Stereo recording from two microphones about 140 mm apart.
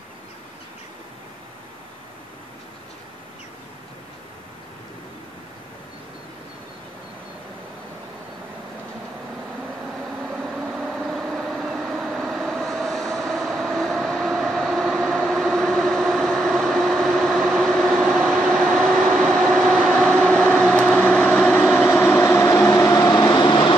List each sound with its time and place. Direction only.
10.4 s vehicle: 5° right (ahead or behind); by 22.2 s 10° left (ahead or behind)
22.2 s vehicle: 20° left (ahead or behind)